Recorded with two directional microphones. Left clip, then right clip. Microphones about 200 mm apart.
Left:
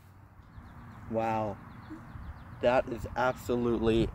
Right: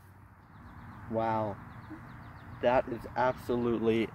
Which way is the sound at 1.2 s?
15° left (ahead or behind).